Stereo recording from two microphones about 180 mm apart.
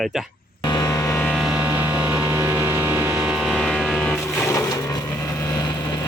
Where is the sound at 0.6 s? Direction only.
20° left (ahead or behind).